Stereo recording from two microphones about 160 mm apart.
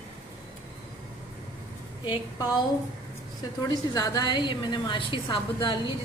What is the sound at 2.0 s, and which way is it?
Speech, 25° left (ahead or behind).